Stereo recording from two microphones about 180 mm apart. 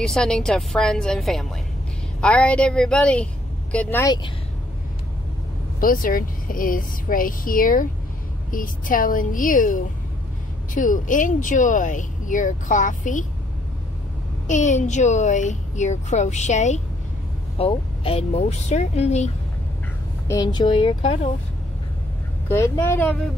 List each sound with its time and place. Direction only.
0.0 s a woman's voice: 5° left (ahead or behind)
4.0 s speech: 25° left (ahead or behind)
5.8 s speech: 50° left (ahead or behind)
14.5 s a woman's voice: 40° left (ahead or behind)
20.2 s speech: 20° left (ahead or behind)
22.5 s a woman's voice: 15° left (ahead or behind)